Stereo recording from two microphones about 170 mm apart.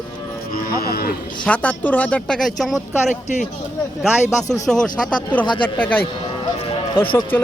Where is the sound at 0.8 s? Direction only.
60° left (ahead or behind).